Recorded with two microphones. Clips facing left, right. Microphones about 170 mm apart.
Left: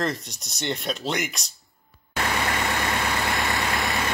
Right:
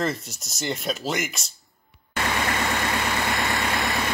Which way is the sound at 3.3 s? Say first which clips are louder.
Even; centre (ahead or behind).